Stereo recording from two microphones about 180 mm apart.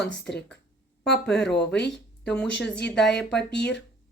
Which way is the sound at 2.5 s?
75° left (ahead or behind).